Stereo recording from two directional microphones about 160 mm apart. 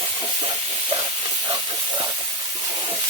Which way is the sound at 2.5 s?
25° right (ahead or behind).